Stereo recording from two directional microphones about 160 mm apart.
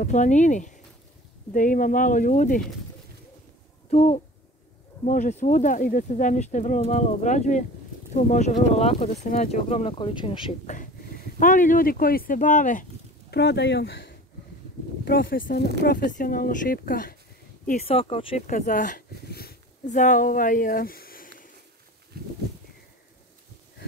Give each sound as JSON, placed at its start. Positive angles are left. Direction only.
{"t": 0.0, "sound": "speech", "side_deg": 50}
{"t": 3.9, "sound": "speech", "side_deg": 40}
{"t": 11.3, "sound": "speech", "side_deg": 55}
{"t": 13.3, "sound": "speech", "side_deg": 90}
{"t": 17.8, "sound": "speech", "side_deg": 35}
{"t": 18.5, "sound": "speech", "side_deg": 55}